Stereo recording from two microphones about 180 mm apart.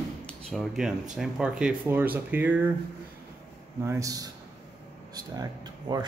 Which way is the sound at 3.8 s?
15° right (ahead or behind).